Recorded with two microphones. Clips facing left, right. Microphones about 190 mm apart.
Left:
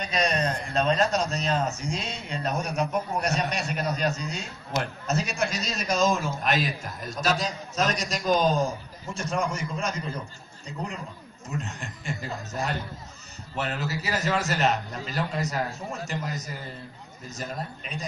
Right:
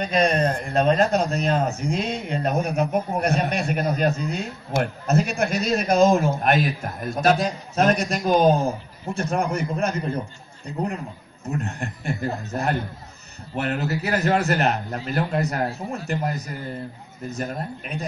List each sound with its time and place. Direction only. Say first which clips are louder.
0.0 s a man's voice: right 6 dB; 55° right (ahead or behind)
17.3 s a man's voice: right 5 dB; 60° right (ahead or behind)